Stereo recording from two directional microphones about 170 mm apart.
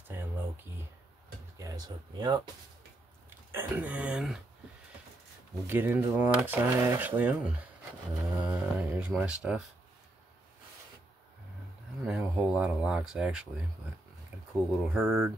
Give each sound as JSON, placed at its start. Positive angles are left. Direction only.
{"t": 0.1, "sound": "a sound", "side_deg": -15}
{"t": 1.6, "sound": "speech", "side_deg": -20}
{"t": 3.5, "sound": "speech", "side_deg": -10}
{"t": 5.7, "sound": "speech", "side_deg": -10}
{"t": 12.0, "sound": "speech", "side_deg": -5}
{"t": 14.5, "sound": "speech", "side_deg": -5}